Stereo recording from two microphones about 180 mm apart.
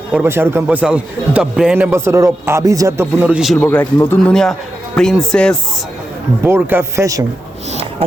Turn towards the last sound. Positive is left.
turn(degrees=-15)  # may be behind; listen again after turning